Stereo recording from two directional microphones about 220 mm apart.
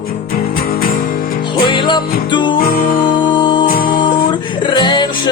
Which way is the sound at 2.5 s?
40° left (ahead or behind).